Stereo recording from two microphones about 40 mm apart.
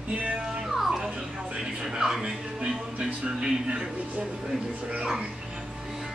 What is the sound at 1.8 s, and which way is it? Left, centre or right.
Speech, centre.